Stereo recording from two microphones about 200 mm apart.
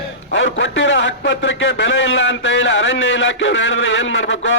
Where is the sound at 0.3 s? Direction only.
60° left (ahead or behind).